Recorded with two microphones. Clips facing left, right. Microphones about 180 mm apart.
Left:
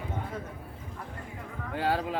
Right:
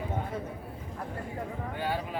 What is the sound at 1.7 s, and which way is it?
Speech, 90° left.